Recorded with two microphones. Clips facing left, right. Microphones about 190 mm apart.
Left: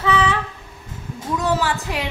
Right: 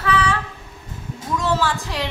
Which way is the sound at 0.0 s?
20° left (ahead or behind).